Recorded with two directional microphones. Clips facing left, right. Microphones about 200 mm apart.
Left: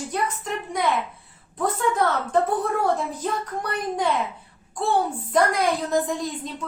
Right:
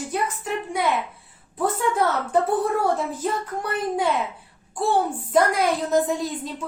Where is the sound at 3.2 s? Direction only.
5° right (ahead or behind).